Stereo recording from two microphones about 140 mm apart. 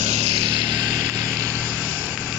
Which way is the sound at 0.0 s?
55° right (ahead or behind).